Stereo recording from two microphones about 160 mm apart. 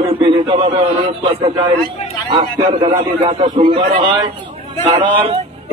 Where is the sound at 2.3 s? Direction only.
30° right (ahead or behind).